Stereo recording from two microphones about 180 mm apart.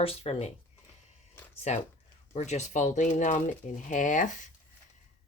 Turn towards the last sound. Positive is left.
turn(degrees=45)  # may be behind; listen again after turning